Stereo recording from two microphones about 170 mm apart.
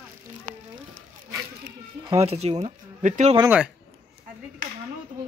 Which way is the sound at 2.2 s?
40° right (ahead or behind).